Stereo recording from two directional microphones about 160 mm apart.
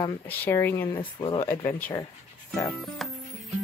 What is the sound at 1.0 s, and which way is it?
Speech, 35° left (ahead or behind).